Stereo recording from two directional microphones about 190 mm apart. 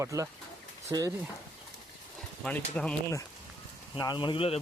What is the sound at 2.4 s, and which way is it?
Speech, 5° left (ahead or behind).